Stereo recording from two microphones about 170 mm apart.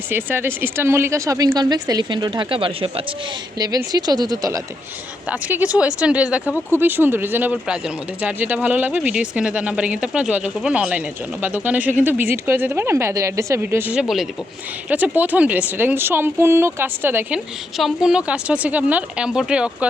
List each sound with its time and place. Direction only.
0.1 s speech: 10° right (ahead or behind)
5.3 s speech: 10° right (ahead or behind)
17.7 s a woman's voice: centre (ahead or behind)